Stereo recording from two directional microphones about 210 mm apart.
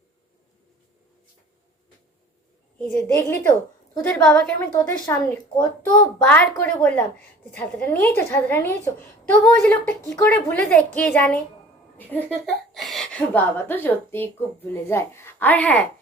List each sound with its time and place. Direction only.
2.7 s a woman's voice: 10° left (ahead or behind)
4.7 s a woman's voice: 15° left (ahead or behind)